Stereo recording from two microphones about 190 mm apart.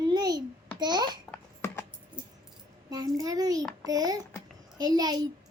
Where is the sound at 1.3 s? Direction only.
15° left (ahead or behind).